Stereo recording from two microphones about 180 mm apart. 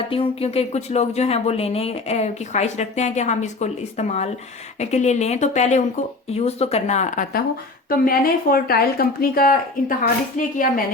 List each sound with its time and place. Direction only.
0.1 s a woman's voice: 30° left (ahead or behind); by 10.8 s 50° left (ahead or behind)